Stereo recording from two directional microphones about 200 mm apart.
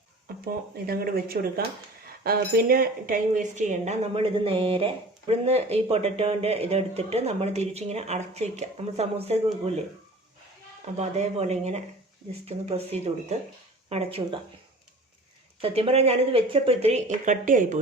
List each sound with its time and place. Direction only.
0.4 s speech: 45° right (ahead or behind); by 9.7 s 30° right (ahead or behind)
10.9 s speech: 35° right (ahead or behind)
15.6 s speech: 30° right (ahead or behind)